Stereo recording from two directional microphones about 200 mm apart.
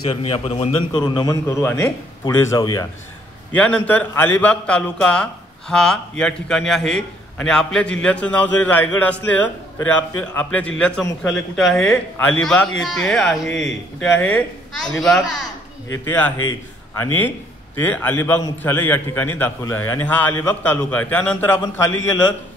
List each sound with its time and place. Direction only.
0.1 s a man's voice: 30° left (ahead or behind)
3.5 s a man's voice: 5° left (ahead or behind)